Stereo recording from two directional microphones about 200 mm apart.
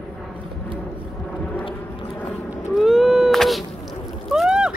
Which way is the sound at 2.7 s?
Centre (ahead or behind).